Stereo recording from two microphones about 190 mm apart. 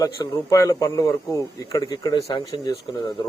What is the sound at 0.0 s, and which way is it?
A man's voice, 20° left (ahead or behind).